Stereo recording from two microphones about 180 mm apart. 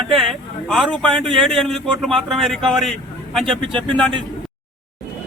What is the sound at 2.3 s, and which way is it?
A man's voice, centre (ahead or behind).